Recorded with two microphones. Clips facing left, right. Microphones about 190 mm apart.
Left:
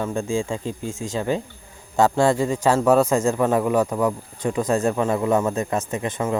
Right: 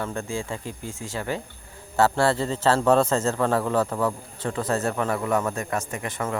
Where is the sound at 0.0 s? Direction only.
15° left (ahead or behind).